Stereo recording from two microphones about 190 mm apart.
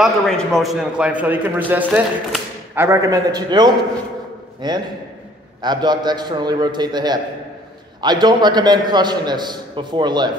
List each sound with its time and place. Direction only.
0.0 s a man's voice: centre (ahead or behind); by 10.3 s 20° right (ahead or behind)